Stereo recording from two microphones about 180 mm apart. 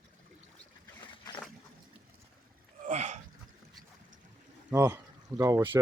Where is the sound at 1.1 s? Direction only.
30° left (ahead or behind).